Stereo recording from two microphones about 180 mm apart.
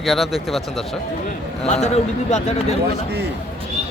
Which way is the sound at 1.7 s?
35° left (ahead or behind).